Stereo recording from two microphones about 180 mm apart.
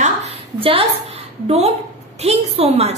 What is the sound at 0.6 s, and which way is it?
A woman's voice, 30° right (ahead or behind).